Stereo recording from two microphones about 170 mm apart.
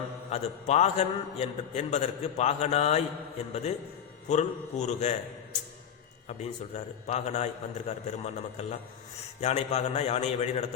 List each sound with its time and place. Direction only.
0.3 s a man's voice: 40° left (ahead or behind)
6.7 s a man's voice: 40° left (ahead or behind)